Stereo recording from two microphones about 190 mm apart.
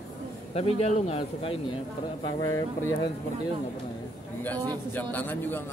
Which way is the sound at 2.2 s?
15° left (ahead or behind).